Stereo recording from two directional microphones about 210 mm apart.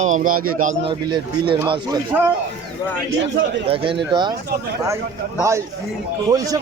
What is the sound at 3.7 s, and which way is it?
Speech, 25° right (ahead or behind).